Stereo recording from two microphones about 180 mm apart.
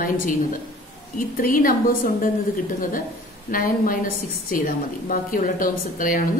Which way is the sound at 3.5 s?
50° left (ahead or behind).